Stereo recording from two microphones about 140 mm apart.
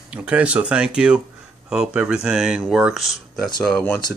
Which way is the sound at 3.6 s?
10° left (ahead or behind).